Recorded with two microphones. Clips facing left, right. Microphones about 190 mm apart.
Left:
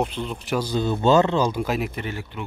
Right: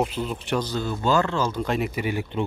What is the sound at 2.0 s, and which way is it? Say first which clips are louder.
Speech: right 5 dB; 15° right (ahead or behind).